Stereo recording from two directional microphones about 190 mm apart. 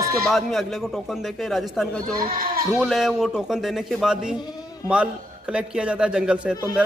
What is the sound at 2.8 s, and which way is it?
Speech, centre (ahead or behind).